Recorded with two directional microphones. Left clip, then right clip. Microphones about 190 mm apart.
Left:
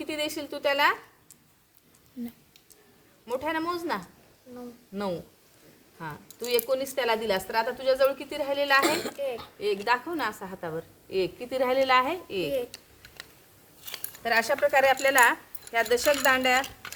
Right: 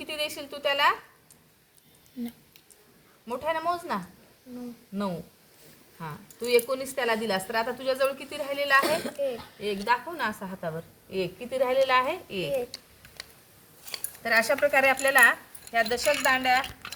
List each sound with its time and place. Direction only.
0.0 s a woman's voice: 45° left (ahead or behind)
3.2 s speech: 45° left (ahead or behind)
6.0 s a woman's voice: 30° left (ahead or behind)
8.8 s a child's voice: 15° left (ahead or behind)
9.6 s a woman's voice: 30° left (ahead or behind)
14.2 s speech: 10° left (ahead or behind)
14.6 s a woman's voice: 30° left (ahead or behind)
15.0 s speech: 45° left (ahead or behind); by 16.6 s 60° left (ahead or behind)